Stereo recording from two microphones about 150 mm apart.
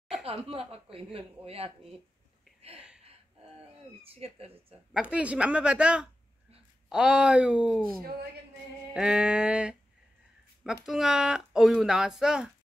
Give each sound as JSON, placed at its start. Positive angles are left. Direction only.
{"t": 0.2, "sound": "speech", "side_deg": -40}
{"t": 4.0, "sound": "speech", "side_deg": -40}
{"t": 4.9, "sound": "speech", "side_deg": -10}
{"t": 8.9, "sound": "speech", "side_deg": -5}